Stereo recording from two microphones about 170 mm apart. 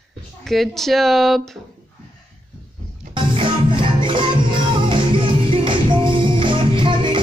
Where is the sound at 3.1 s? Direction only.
30° right (ahead or behind).